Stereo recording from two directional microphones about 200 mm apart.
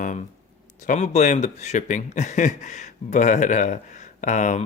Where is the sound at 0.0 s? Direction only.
40° left (ahead or behind).